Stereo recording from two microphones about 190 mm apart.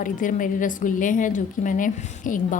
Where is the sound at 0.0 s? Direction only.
45° left (ahead or behind).